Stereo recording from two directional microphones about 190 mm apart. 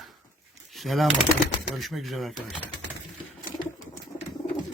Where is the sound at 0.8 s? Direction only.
Centre (ahead or behind).